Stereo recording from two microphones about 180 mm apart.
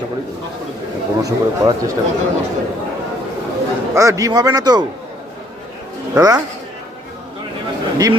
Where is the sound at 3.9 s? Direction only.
15° right (ahead or behind).